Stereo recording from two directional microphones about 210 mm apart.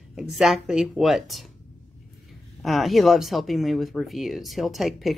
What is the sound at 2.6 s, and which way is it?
Speech, centre (ahead or behind).